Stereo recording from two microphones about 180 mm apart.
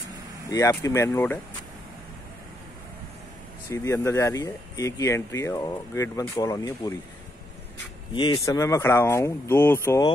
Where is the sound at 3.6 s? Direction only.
15° left (ahead or behind).